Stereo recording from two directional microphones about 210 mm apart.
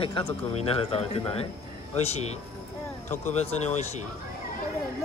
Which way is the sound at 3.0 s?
30° left (ahead or behind).